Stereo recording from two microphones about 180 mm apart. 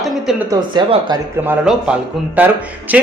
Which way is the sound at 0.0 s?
Centre (ahead or behind).